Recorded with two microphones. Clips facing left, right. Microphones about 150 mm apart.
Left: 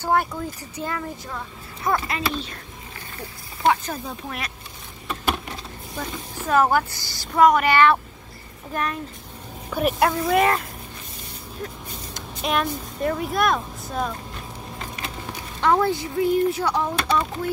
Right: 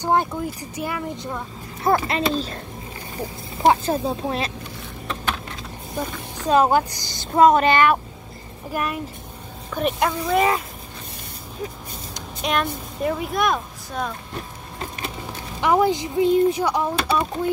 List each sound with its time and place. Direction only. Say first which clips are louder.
0.0 s speech: right 2 dB; 20° right (ahead or behind)
2.0 s a woman's voice: right 4 dB; 25° right (ahead or behind)
3.6 s speech: right 4 dB; 30° right (ahead or behind)
5.9 s a woman's voice: right 3 dB; 15° right (ahead or behind)
9.7 s a woman's voice: left 1 dB; 5° left (ahead or behind)
11.6 s speech: right 2 dB; centre (ahead or behind)
15.6 s speech: right 2 dB; 15° right (ahead or behind)